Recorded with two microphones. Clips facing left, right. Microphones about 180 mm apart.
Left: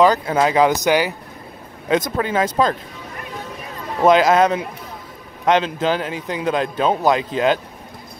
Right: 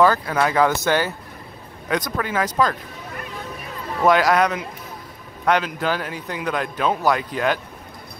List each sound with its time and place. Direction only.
0.0 s a man's voice: 20° left (ahead or behind)
4.0 s a man's voice: 20° left (ahead or behind)